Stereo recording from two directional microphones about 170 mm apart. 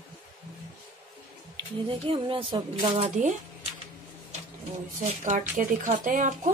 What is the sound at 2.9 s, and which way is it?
Speech, 40° right (ahead or behind).